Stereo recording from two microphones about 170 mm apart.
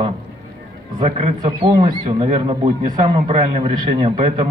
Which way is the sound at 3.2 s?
40° right (ahead or behind).